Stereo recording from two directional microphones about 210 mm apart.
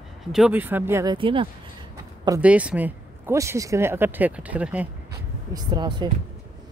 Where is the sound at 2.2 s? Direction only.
10° right (ahead or behind).